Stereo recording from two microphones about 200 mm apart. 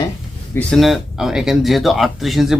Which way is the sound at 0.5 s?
5° left (ahead or behind).